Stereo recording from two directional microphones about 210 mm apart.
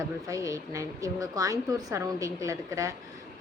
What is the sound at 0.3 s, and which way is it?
A woman's voice, 15° right (ahead or behind).